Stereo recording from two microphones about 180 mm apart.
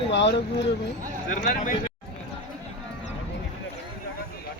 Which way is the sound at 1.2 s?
45° left (ahead or behind).